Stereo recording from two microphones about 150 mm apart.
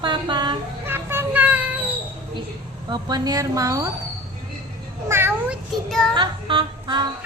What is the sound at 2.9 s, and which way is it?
Speech, 30° right (ahead or behind).